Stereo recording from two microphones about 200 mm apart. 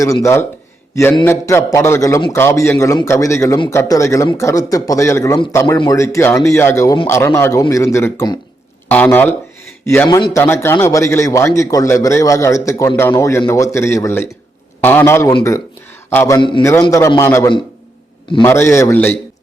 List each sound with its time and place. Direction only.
0.0 s a man's voice: 15° left (ahead or behind)
10.2 s speech: 25° left (ahead or behind)
10.4 s a man's voice: 10° left (ahead or behind)